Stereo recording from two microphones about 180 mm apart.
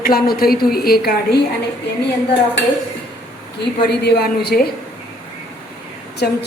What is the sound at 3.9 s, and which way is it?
Speech, 65° left (ahead or behind).